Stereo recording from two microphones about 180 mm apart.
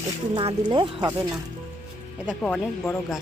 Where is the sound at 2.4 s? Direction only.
5° left (ahead or behind).